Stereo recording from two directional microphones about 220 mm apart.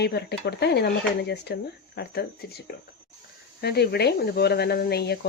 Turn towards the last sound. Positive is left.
turn(degrees=45)  # may be behind; listen again after turning